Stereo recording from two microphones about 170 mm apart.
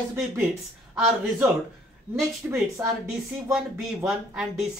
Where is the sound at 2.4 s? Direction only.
10° right (ahead or behind).